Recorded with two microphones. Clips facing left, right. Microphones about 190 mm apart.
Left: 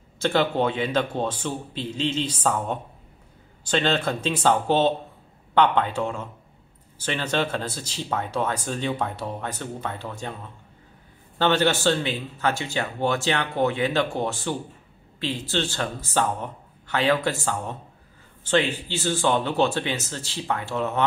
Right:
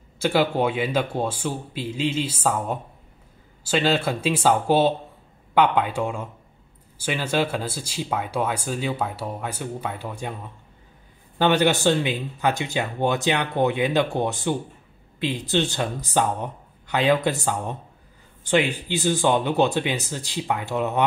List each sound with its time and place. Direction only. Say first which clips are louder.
0.2 s speech: right 1 dB; 10° right (ahead or behind)